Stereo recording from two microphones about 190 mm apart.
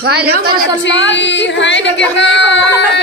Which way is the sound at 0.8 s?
70° left (ahead or behind).